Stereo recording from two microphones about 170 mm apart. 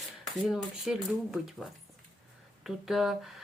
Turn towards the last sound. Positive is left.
turn(degrees=0)  # may be behind; listen again after turning